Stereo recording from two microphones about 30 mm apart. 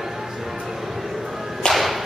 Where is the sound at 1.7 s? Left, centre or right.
Left.